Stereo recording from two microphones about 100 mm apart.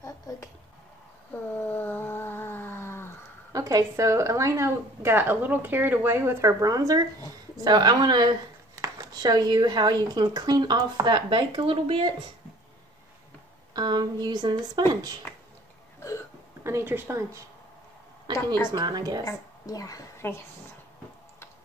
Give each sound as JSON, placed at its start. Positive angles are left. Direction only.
{"t": 0.3, "sound": "speech", "side_deg": 30}
{"t": 1.5, "sound": "a sound", "side_deg": 15}
{"t": 3.5, "sound": "a woman's voice", "side_deg": -35}
{"t": 13.7, "sound": "a woman's voice", "side_deg": -45}
{"t": 16.6, "sound": "a woman's voice", "side_deg": -25}
{"t": 18.7, "sound": "a woman's voice", "side_deg": -45}
{"t": 19.2, "sound": "a woman's voice", "side_deg": 35}